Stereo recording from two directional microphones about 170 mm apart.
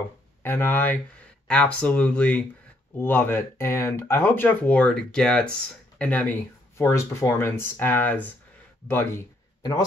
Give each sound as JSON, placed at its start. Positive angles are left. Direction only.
{"t": 0.4, "sound": "speech", "side_deg": 10}